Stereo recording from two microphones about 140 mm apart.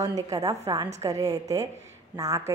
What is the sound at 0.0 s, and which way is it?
A woman's voice, 25° right (ahead or behind).